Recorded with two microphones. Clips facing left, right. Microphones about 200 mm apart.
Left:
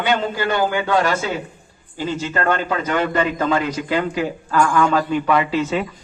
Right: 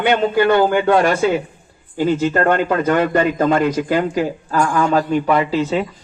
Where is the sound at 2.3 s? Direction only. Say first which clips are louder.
Right 1 dB; 40° right (ahead or behind).